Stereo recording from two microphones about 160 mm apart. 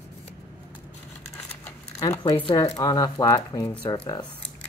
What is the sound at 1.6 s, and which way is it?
Keys jangling, 20° left (ahead or behind).